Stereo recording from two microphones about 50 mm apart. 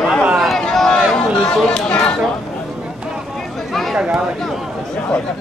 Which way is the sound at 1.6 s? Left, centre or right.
Centre.